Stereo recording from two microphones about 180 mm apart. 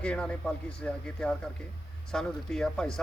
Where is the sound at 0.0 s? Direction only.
5° left (ahead or behind).